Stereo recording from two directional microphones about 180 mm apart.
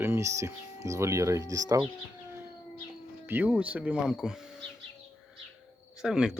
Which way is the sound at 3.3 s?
10° right (ahead or behind).